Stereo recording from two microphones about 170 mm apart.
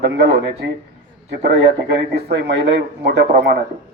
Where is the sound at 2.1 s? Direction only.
80° right.